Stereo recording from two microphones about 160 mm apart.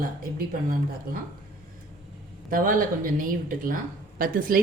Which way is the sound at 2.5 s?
60° right (ahead or behind).